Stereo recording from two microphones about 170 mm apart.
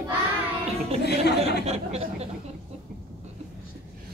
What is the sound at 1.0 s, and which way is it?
Speech, 70° left (ahead or behind).